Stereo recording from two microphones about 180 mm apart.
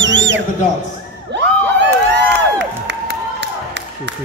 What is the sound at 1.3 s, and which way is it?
Crowd, 85° right.